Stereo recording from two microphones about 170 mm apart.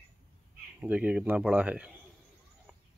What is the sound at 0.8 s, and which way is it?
Speech, 10° right (ahead or behind).